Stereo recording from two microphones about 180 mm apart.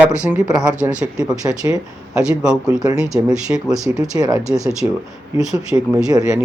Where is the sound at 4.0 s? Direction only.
20° right (ahead or behind).